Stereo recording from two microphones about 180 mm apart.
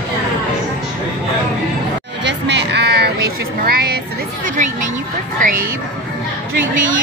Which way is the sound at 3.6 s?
60° right (ahead or behind).